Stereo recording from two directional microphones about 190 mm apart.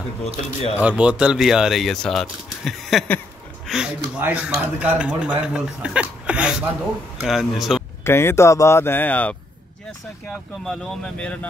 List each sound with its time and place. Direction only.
0.2 s speech: 35° left (ahead or behind)
0.7 s speech: 5° right (ahead or behind)
8.0 s speech: 15° left (ahead or behind)
10.6 s speech: centre (ahead or behind)